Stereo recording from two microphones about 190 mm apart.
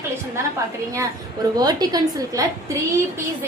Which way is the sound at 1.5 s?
20° right (ahead or behind).